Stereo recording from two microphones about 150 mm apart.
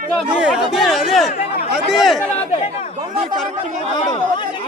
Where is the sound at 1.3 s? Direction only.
45° left (ahead or behind).